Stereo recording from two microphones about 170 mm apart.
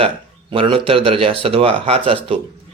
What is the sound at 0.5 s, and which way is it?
A man's voice, 30° right (ahead or behind).